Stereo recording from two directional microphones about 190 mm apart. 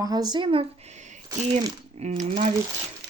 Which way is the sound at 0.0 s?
20° right (ahead or behind).